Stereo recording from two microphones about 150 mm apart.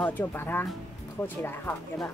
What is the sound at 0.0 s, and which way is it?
Speech, 15° left (ahead or behind).